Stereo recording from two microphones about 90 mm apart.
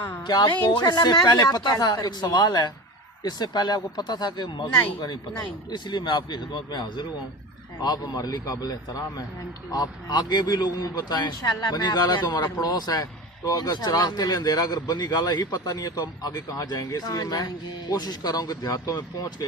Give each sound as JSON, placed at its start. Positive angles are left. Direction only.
{"t": 0.2, "sound": "a man's voice", "side_deg": 50}